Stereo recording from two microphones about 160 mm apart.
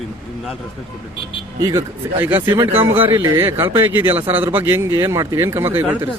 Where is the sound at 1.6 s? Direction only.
20° right (ahead or behind).